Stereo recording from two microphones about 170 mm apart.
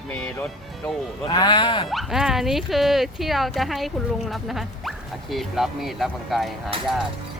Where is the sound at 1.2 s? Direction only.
25° left (ahead or behind).